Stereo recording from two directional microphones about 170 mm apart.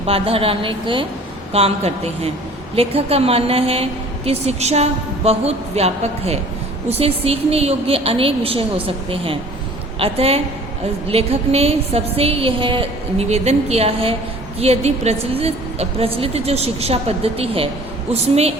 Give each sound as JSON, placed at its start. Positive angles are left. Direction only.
{"t": 0.0, "sound": "a woman's voice", "side_deg": -35}